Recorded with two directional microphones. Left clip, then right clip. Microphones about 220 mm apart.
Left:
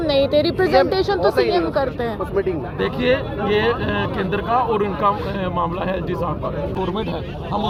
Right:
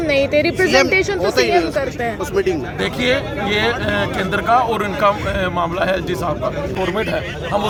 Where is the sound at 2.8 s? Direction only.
10° right (ahead or behind).